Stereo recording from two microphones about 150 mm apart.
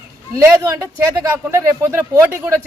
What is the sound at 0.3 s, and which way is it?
A woman's voice, 20° right (ahead or behind).